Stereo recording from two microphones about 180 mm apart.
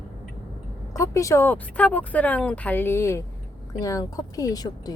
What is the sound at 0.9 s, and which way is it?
A woman's voice, 20° left (ahead or behind).